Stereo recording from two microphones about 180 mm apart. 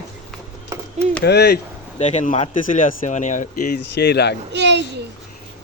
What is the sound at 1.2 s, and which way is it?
Speech, 65° left (ahead or behind).